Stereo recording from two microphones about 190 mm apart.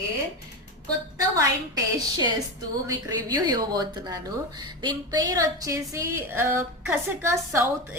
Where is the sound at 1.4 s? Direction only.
20° right (ahead or behind).